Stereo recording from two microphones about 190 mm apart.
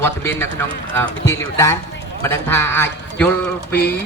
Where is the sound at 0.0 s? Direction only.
10° left (ahead or behind).